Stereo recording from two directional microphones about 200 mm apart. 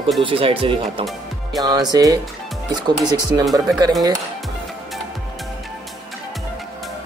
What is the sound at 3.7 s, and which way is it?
Speech, 20° right (ahead or behind).